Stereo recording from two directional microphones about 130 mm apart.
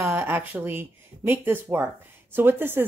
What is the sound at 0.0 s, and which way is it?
A woman's voice, 15° right (ahead or behind).